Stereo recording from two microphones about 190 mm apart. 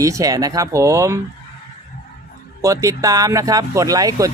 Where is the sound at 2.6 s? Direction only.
15° right (ahead or behind).